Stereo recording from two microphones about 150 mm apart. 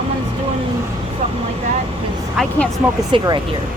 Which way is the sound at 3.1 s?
35° right (ahead or behind).